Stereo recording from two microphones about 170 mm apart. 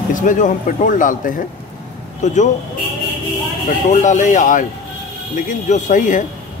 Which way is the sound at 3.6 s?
45° left (ahead or behind).